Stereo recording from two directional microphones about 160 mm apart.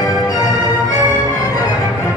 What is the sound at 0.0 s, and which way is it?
Music, 25° left (ahead or behind).